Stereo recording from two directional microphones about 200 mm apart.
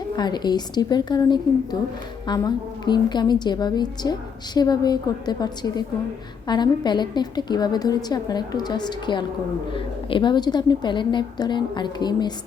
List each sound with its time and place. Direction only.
0.2 s a woman's voice: 20° left (ahead or behind)